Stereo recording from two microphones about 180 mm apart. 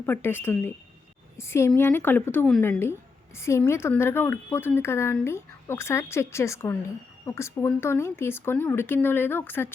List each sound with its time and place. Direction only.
0.0 s a woman's voice: 10° left (ahead or behind)